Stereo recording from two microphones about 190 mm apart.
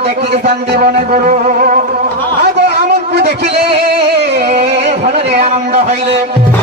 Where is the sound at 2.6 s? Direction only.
60° right (ahead or behind).